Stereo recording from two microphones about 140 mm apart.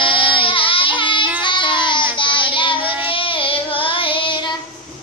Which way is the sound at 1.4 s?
35° left (ahead or behind).